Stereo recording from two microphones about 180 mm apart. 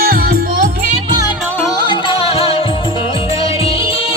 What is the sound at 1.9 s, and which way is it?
Music, 30° left (ahead or behind).